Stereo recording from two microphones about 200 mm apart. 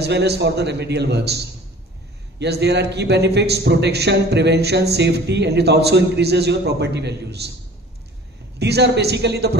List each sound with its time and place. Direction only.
0.0 s a man's voice: 55° right (ahead or behind)
8.5 s a man's voice: 55° right (ahead or behind)